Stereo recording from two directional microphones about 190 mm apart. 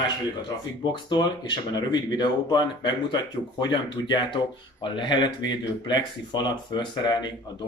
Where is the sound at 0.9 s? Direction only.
25° left (ahead or behind).